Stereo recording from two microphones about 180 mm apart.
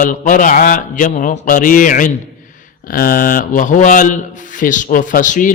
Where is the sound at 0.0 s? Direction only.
50° left (ahead or behind).